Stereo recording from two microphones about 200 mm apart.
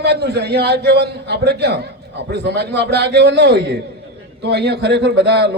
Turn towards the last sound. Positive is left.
turn(degrees=-55)  # may be behind; listen again after turning